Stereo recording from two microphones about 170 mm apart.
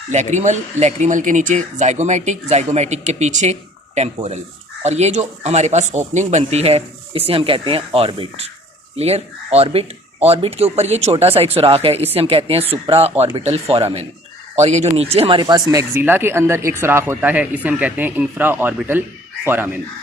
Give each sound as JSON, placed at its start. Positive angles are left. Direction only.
{"t": 0.1, "sound": "speech", "side_deg": -45}